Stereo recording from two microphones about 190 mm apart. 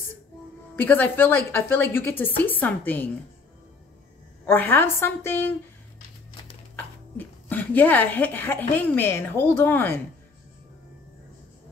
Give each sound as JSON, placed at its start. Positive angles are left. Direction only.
{"t": 0.7, "sound": "a woman's voice", "side_deg": 10}
{"t": 4.5, "sound": "a woman's voice", "side_deg": 10}
{"t": 7.2, "sound": "a woman's voice", "side_deg": 10}